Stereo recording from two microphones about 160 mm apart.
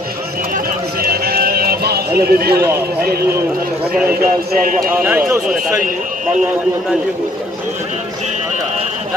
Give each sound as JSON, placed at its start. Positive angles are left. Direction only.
{"t": 1.0, "sound": "run", "side_deg": -70}
{"t": 4.1, "sound": "speech", "side_deg": -65}
{"t": 4.9, "sound": "speech", "side_deg": -15}